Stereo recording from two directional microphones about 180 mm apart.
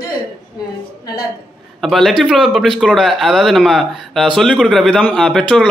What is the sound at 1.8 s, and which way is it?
A man's voice, centre (ahead or behind).